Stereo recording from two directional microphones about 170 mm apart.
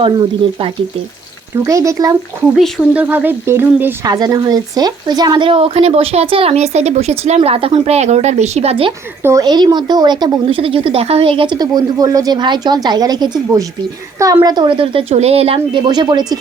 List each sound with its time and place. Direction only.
0.0 s speech: 30° right (ahead or behind)
1.6 s speech: 20° right (ahead or behind)
2.5 s speech: centre (ahead or behind)
3.0 s speech: 10° right (ahead or behind); by 8.9 s 35° right (ahead or behind)
9.2 s speech: 20° right (ahead or behind)